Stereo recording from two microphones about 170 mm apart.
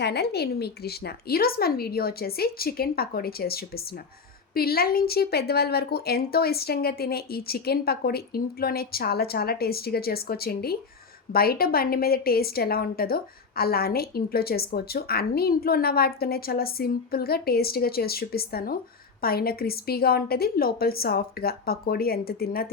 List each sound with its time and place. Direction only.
0.0 s a woman's voice: 75° left (ahead or behind)